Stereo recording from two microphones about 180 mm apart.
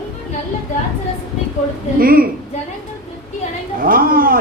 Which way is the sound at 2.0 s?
55° right (ahead or behind).